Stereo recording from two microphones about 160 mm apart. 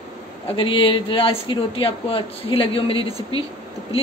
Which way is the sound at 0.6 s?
30° left (ahead or behind).